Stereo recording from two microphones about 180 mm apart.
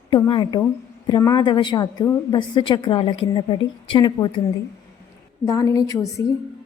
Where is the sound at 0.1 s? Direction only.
25° left (ahead or behind).